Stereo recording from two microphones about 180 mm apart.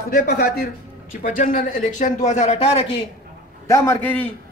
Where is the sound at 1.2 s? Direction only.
45° left (ahead or behind).